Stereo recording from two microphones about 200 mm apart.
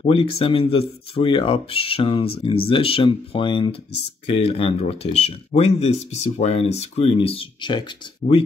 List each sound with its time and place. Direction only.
0.0 s speech: 25° left (ahead or behind)